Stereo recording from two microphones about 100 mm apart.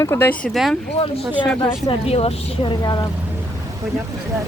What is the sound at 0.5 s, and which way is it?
Speech, centre (ahead or behind).